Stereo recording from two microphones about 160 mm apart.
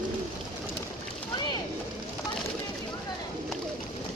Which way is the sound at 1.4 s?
25° left (ahead or behind).